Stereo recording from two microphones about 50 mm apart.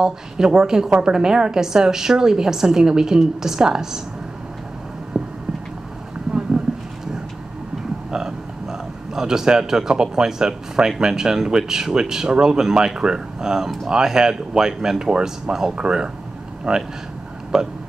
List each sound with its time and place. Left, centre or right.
0.0 s a woman's voice: centre
5.1 s a sound: centre
8.1 s a man's voice: centre